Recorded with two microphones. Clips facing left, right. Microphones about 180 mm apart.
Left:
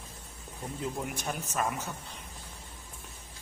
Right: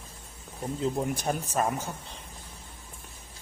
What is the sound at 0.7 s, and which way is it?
Speech, 30° right (ahead or behind).